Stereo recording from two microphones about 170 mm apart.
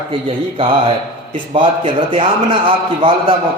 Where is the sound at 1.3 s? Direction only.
30° right (ahead or behind).